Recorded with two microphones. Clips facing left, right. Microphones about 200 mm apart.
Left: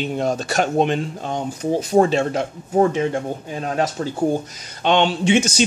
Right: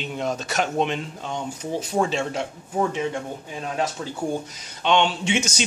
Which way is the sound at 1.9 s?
50° left (ahead or behind).